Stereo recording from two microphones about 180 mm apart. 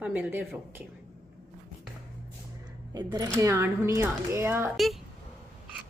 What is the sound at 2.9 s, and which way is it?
A woman's voice, 20° right (ahead or behind).